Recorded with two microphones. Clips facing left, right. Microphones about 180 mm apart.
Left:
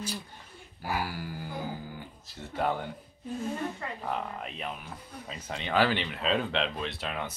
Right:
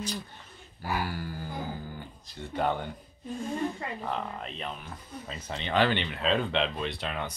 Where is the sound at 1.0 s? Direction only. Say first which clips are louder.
Right 1 dB; 10° left (ahead or behind).